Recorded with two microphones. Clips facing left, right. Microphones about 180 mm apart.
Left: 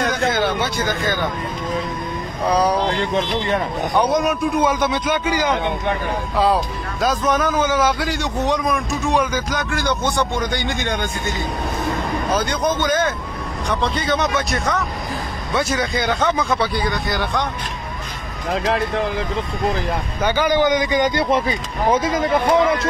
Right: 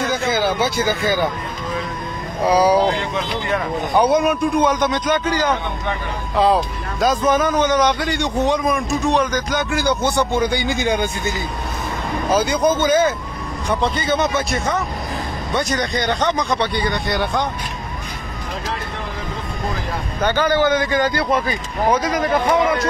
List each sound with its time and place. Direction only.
0.0 s a sound: centre (ahead or behind)
2.4 s speech: 5° right (ahead or behind)
3.9 s speech: 5° right (ahead or behind)
6.3 s a man's voice: centre (ahead or behind)
12.3 s a man's voice: 5° right (ahead or behind)
20.2 s speech: 10° left (ahead or behind)